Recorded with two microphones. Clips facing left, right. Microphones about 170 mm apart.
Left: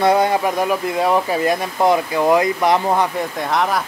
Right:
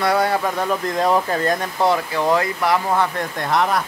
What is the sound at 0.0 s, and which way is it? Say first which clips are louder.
Speech: left 3 dB; 20° left (ahead or behind).